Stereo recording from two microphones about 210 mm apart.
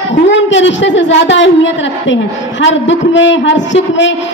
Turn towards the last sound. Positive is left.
turn(degrees=60)  # may be behind; listen again after turning